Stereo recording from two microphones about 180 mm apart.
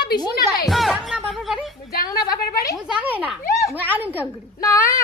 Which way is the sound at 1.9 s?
55° left (ahead or behind).